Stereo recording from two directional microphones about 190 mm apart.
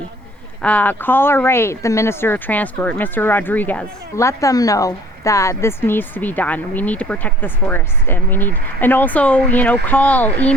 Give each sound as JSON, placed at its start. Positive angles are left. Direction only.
{"t": 0.6, "sound": "speech", "side_deg": 10}